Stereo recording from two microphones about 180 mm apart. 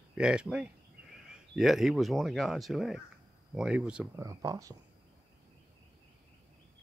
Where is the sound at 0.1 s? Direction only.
5° right (ahead or behind).